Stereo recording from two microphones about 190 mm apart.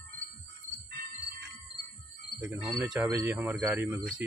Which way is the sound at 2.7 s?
5° right (ahead or behind).